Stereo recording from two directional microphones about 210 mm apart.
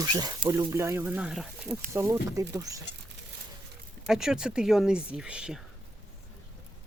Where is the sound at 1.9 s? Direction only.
15° right (ahead or behind).